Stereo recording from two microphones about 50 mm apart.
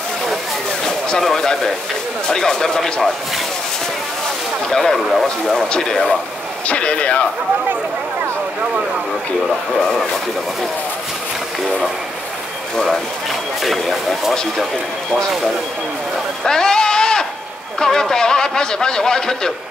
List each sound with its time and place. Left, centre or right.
0.8 s a sound: centre
1.2 s a man's voice: centre
4.6 s a man's voice: centre
6.7 s speech: left
9.8 s a man's voice: centre
13.6 s speech: centre
16.4 s sheep: centre
17.7 s a man's voice: centre